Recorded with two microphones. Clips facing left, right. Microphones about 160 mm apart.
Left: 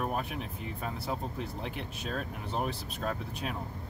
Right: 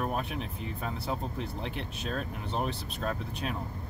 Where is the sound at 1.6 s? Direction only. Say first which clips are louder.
Right 1 dB; 5° left (ahead or behind).